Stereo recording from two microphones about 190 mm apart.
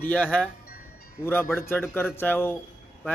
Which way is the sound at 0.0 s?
5° left (ahead or behind).